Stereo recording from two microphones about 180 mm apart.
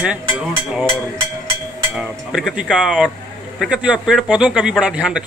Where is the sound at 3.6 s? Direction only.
5° right (ahead or behind).